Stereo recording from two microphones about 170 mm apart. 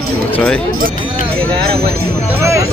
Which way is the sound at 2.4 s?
15° right (ahead or behind).